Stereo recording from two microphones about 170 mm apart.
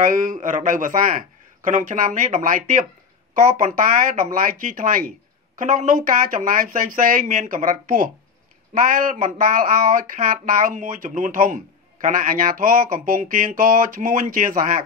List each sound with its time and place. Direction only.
0.0 s speech: 50° right (ahead or behind)